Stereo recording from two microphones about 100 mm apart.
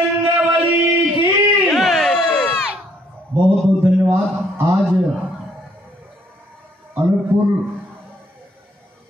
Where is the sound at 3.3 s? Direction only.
20° right (ahead or behind).